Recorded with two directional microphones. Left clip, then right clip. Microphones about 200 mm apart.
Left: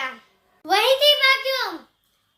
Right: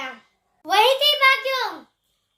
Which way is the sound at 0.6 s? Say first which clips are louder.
Even; 15° left (ahead or behind).